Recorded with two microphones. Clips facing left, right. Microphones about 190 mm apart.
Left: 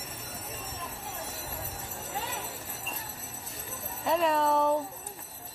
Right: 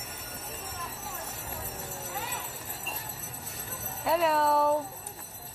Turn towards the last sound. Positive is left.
turn(degrees=-5)  # may be behind; listen again after turning